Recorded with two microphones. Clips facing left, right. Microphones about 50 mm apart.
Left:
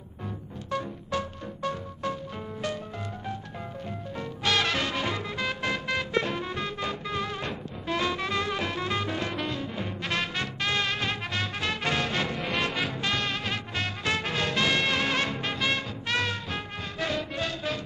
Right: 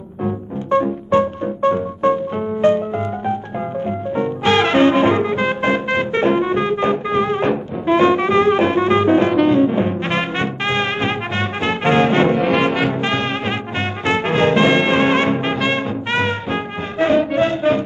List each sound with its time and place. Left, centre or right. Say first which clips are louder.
1.1 s music: right 15 dB; right
3.8 s music: right 16 dB; right